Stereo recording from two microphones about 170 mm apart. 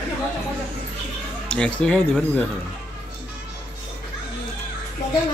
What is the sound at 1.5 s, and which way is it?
Speech, 5° left (ahead or behind).